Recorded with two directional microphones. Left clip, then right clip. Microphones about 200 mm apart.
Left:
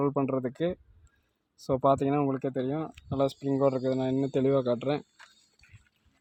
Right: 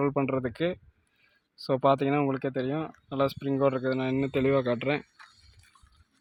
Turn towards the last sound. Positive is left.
turn(degrees=0)  # may be behind; listen again after turning